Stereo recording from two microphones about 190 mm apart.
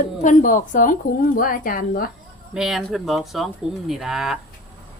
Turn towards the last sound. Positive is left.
turn(degrees=0)  # may be behind; listen again after turning